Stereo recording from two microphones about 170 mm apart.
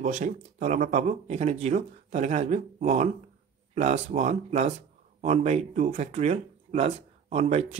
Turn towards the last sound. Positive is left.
turn(degrees=-40)  # may be behind; listen again after turning